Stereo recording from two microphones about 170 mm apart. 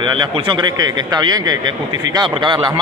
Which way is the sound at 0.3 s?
30° right (ahead or behind).